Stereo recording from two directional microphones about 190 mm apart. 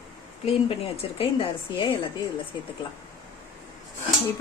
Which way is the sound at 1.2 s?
25° left (ahead or behind).